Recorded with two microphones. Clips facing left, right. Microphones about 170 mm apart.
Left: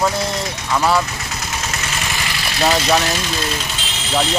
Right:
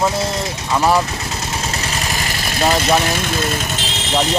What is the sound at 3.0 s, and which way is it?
Speech, 50° right (ahead or behind).